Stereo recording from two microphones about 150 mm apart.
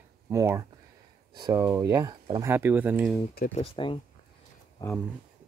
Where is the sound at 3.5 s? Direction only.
40° left (ahead or behind).